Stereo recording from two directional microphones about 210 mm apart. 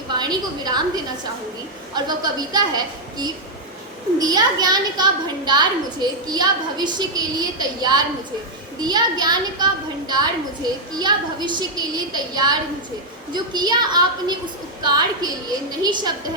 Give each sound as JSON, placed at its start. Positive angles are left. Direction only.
{"t": 0.1, "sound": "a woman's voice", "side_deg": -20}
{"t": 10.9, "sound": "a woman's voice", "side_deg": -20}